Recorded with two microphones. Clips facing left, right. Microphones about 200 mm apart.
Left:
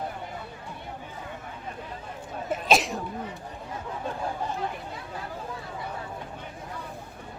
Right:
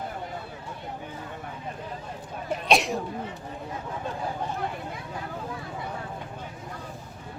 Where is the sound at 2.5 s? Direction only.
Centre (ahead or behind).